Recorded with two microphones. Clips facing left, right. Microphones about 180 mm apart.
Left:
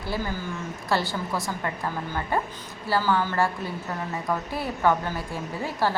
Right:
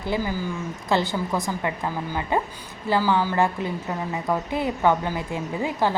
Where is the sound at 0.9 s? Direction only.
20° right (ahead or behind).